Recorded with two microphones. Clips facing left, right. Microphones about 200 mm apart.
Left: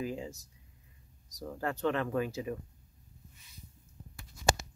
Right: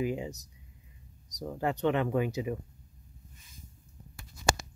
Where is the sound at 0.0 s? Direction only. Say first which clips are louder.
Right 5 dB; 20° right (ahead or behind).